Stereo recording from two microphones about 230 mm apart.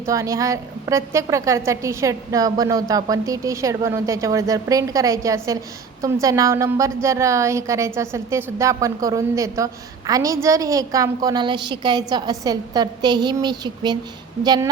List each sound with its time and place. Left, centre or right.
0.0 s a woman's voice: centre